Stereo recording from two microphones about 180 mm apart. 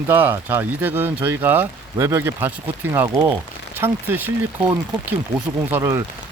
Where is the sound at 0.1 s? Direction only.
10° right (ahead or behind).